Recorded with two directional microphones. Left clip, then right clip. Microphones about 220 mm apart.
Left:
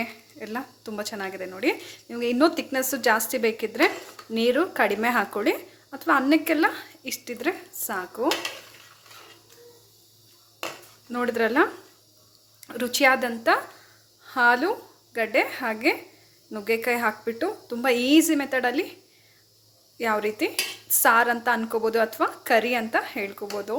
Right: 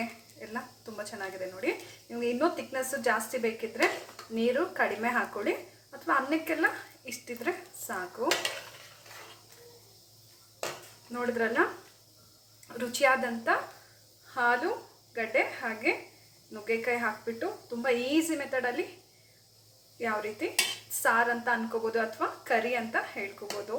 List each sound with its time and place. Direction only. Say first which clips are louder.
0.3 s a woman's voice: left 7 dB; 50° left (ahead or behind)
11.1 s a woman's voice: left 6 dB; 50° left (ahead or behind)
12.6 s a woman's voice: left 6 dB; 45° left (ahead or behind)
20.0 s a woman's voice: left 8 dB; 50° left (ahead or behind)